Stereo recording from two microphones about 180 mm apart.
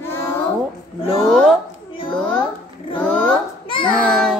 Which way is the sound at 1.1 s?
Centre (ahead or behind).